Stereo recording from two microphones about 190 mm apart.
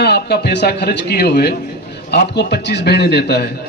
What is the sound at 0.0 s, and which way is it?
Speech, 60° left (ahead or behind).